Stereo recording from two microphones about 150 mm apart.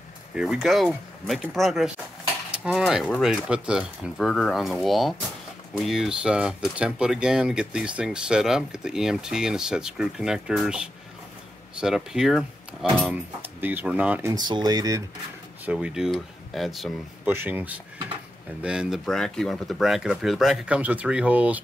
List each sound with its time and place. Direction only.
0.3 s speech: 5° right (ahead or behind)
2.5 s cutlery: 5° right (ahead or behind)
3.2 s speech: 5° right (ahead or behind)
14.3 s speech: 30° right (ahead or behind)
15.6 s speech: 5° right (ahead or behind)
17.3 s speech: 15° right (ahead or behind)